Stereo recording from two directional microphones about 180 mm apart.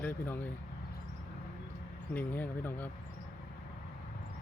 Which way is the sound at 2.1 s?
10° left (ahead or behind).